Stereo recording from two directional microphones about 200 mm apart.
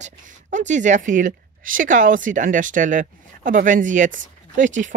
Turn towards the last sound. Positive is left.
turn(degrees=-40)  # may be behind; listen again after turning